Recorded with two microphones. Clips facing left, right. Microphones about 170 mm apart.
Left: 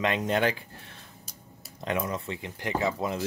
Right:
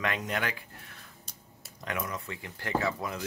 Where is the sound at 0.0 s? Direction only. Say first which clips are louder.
Left 6 dB; 25° left (ahead or behind).